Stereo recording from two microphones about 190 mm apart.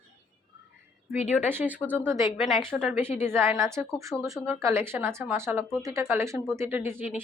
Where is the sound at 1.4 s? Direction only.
10° right (ahead or behind).